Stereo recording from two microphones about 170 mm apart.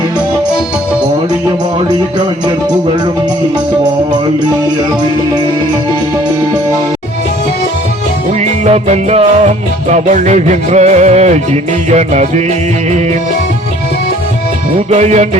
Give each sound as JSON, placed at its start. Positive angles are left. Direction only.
{"t": 8.4, "sound": "music", "side_deg": -40}
{"t": 14.8, "sound": "music", "side_deg": -40}